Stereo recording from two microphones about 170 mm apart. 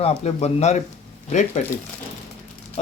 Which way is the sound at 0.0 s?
40° left (ahead or behind).